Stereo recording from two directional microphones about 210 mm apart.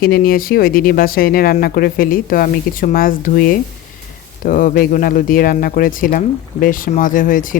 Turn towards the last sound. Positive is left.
turn(degrees=40)  # may be behind; listen again after turning